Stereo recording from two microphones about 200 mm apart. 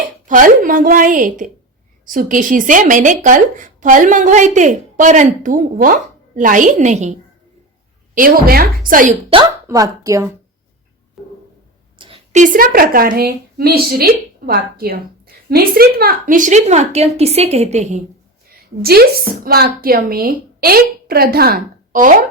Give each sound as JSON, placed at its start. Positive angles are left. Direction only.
{"t": 0.3, "sound": "speech", "side_deg": -40}
{"t": 8.1, "sound": "speech", "side_deg": -45}
{"t": 9.3, "sound": "speech", "side_deg": -20}
{"t": 11.2, "sound": "a sound", "side_deg": 0}
{"t": 11.9, "sound": "a woman's voice", "side_deg": -25}
{"t": 18.8, "sound": "speech", "side_deg": -50}